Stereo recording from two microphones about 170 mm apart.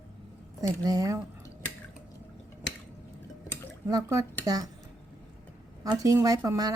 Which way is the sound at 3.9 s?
20° right (ahead or behind).